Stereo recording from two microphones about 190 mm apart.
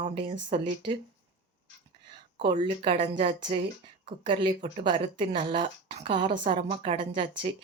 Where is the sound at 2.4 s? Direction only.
30° right (ahead or behind).